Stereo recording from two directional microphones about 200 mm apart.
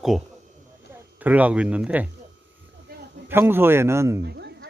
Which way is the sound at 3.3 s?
10° right (ahead or behind).